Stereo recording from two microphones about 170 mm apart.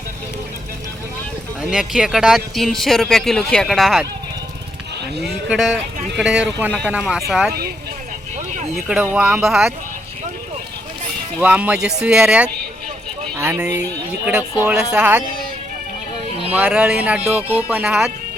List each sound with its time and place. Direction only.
1.6 s speech: 5° right (ahead or behind)
5.5 s speech: centre (ahead or behind)
8.7 s speech: 5° right (ahead or behind)
11.4 s speech: 5° right (ahead or behind)
14.3 s speech: 5° right (ahead or behind)
16.5 s speech: 10° right (ahead or behind)